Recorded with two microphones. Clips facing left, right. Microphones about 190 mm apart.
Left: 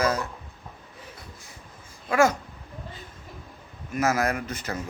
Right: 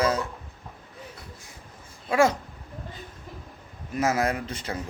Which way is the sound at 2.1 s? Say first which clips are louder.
Even; 30° right (ahead or behind).